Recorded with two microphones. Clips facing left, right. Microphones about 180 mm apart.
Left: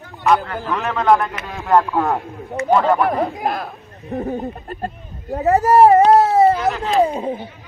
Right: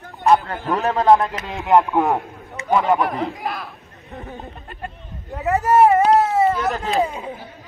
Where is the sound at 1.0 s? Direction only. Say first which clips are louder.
Even; 25° right (ahead or behind).